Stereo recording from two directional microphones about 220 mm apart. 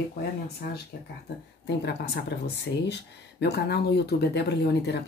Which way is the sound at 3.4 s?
50° left (ahead or behind).